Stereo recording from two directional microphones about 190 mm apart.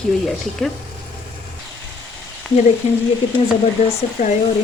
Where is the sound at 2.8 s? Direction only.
35° left (ahead or behind).